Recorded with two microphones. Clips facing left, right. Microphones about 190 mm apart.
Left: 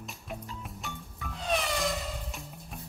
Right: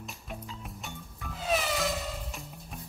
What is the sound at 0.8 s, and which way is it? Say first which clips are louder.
Music: left 1 dB; centre (ahead or behind).